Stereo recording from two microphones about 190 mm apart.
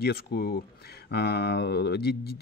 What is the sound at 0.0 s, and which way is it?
Speech, 55° left (ahead or behind).